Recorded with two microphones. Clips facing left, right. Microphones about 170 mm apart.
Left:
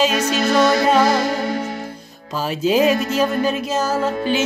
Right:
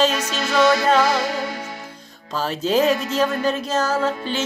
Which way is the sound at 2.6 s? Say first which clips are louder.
Left 3 dB; 10° left (ahead or behind).